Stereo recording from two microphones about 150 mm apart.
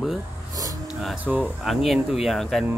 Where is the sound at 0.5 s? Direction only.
25° right (ahead or behind).